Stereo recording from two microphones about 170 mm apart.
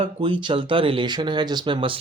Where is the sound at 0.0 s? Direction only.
30° right (ahead or behind).